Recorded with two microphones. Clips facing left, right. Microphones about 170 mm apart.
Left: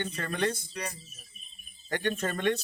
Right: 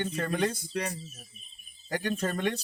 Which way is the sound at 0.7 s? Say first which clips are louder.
Right 5 dB; 50° right (ahead or behind).